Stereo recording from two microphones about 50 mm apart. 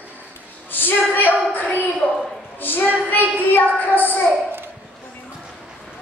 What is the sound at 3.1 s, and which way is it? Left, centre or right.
Child singing, left.